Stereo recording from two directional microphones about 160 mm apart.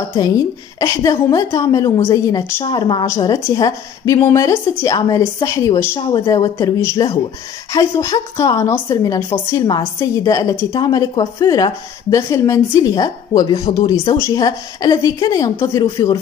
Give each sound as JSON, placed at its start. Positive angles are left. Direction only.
{"t": 0.1, "sound": "speech", "side_deg": 25}
{"t": 5.9, "sound": "speech", "side_deg": 30}